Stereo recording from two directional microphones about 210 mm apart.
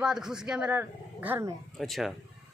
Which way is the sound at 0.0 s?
5° right (ahead or behind).